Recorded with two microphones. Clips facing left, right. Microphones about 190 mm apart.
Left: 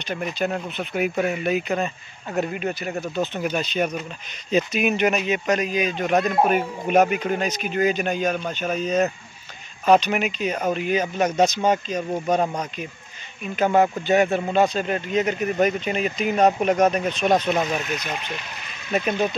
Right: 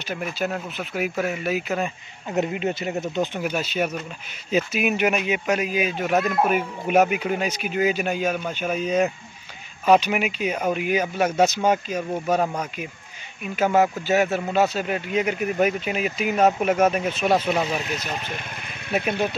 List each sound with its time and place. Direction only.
0.1 s speech: 5° right (ahead or behind)
2.3 s speech: 20° right (ahead or behind)
3.3 s speech: 5° right (ahead or behind)